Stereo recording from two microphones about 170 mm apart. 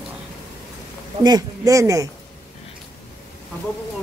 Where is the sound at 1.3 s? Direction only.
20° right (ahead or behind).